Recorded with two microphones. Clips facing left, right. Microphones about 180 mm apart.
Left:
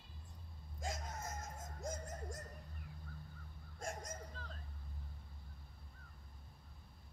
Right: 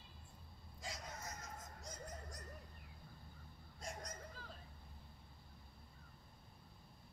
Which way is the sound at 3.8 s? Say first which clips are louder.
Left 4 dB; 50° left (ahead or behind).